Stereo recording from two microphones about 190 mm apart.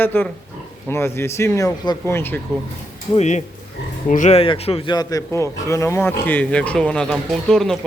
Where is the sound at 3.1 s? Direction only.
35° left (ahead or behind).